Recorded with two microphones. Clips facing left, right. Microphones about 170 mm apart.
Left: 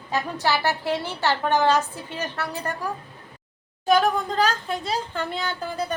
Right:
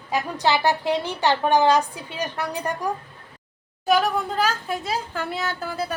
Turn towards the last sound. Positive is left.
turn(degrees=-5)  # may be behind; listen again after turning